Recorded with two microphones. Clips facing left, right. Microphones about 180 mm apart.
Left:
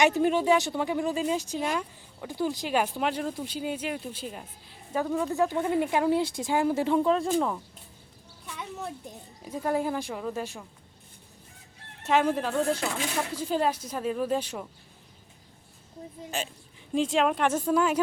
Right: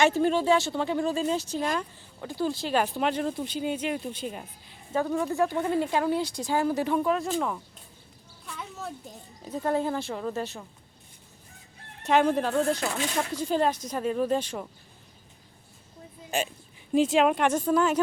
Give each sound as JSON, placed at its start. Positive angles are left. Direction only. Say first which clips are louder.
{"t": 0.0, "sound": "speech", "louder": "even", "side_deg": 15}
{"t": 5.3, "sound": "speech", "louder": "even", "side_deg": 15}
{"t": 7.3, "sound": "speech", "louder": "left 2 dB", "side_deg": 5}
{"t": 9.4, "sound": "speech", "louder": "right 1 dB", "side_deg": 10}
{"t": 12.0, "sound": "speech", "louder": "right 2 dB", "side_deg": 5}
{"t": 16.9, "sound": "speech", "louder": "right 3 dB", "side_deg": -5}